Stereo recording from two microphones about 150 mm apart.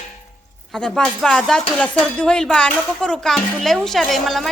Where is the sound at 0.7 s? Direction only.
5° left (ahead or behind).